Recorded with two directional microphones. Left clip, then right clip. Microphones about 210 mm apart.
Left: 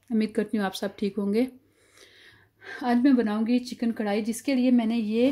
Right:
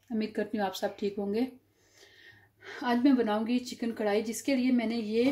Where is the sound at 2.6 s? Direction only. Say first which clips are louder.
Left 4 dB; 50° left (ahead or behind).